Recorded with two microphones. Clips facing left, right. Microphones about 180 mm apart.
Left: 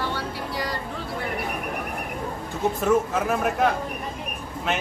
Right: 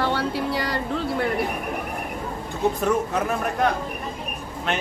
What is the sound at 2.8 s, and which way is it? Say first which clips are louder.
A man's voice: left 1 dB; centre (ahead or behind).